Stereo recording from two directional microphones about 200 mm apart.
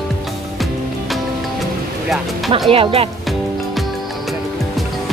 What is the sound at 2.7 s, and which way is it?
Speech, 30° right (ahead or behind).